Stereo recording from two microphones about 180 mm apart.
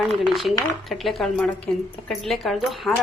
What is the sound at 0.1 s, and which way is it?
Speech, centre (ahead or behind).